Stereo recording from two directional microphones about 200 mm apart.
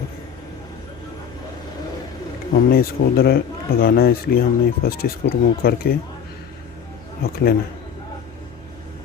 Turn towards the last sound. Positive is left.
turn(degrees=50)  # may be behind; listen again after turning